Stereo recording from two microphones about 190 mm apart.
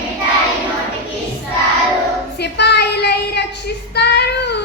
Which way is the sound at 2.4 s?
60° left (ahead or behind).